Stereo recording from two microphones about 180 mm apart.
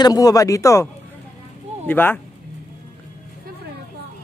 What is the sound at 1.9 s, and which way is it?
Speech, 10° left (ahead or behind).